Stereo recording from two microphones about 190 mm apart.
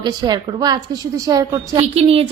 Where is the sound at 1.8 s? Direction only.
30° right (ahead or behind).